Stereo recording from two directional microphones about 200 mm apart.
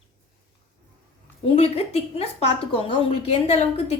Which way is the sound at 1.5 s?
30° left (ahead or behind).